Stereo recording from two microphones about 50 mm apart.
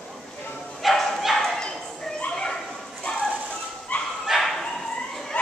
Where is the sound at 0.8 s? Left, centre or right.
Centre.